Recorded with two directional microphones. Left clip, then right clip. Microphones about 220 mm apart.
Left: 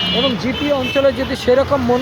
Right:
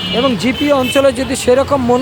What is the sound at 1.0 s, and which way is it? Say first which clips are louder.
Speech: right 3 dB; 20° right (ahead or behind).